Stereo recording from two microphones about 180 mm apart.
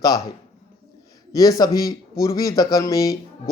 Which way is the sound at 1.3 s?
20° left (ahead or behind).